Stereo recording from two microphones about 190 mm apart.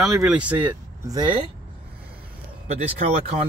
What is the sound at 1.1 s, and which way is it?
Speech, 25° right (ahead or behind).